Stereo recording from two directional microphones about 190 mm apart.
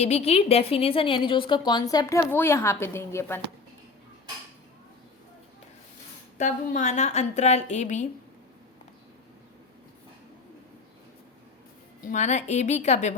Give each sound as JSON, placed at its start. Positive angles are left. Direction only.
{"t": 0.0, "sound": "a woman's voice", "side_deg": 35}
{"t": 6.3, "sound": "a woman's voice", "side_deg": 40}
{"t": 12.0, "sound": "a woman's voice", "side_deg": 40}